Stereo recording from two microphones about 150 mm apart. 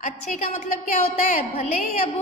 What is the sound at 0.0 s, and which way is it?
A woman's voice, 55° left (ahead or behind).